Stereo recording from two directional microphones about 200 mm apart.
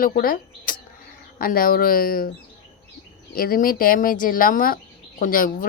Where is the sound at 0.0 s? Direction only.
45° left (ahead or behind).